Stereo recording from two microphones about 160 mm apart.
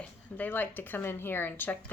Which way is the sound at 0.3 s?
10° left (ahead or behind).